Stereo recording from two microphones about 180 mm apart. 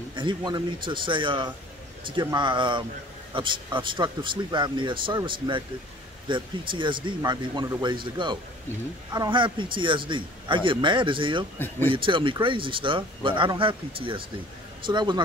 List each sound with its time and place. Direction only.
0.1 s a man's voice: 25° right (ahead or behind)
11.5 s speech: 10° left (ahead or behind)
11.9 s a man's voice: 30° right (ahead or behind)